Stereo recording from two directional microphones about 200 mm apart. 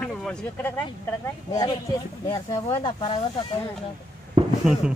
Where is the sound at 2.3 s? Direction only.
20° left (ahead or behind).